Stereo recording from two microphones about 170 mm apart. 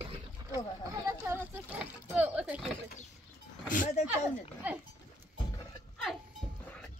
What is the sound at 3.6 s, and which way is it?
Speech, 50° left (ahead or behind).